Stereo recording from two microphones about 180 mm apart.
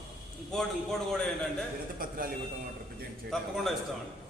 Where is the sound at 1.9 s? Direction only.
55° right (ahead or behind).